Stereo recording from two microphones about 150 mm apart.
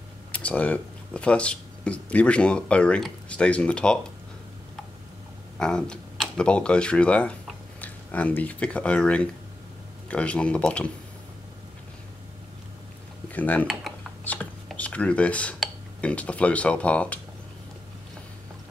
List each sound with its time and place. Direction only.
0.3 s speech: 10° left (ahead or behind)
5.6 s speech: 5° left (ahead or behind)
13.3 s speech: 10° left (ahead or behind)
14.2 s dishes: 10° left (ahead or behind)